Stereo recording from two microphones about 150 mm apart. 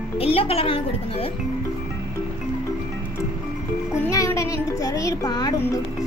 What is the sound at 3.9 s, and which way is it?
Music, 20° left (ahead or behind).